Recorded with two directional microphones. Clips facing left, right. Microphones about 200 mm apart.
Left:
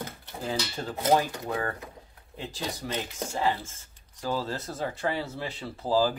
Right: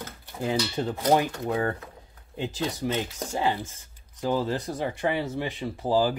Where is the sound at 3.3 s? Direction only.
20° right (ahead or behind).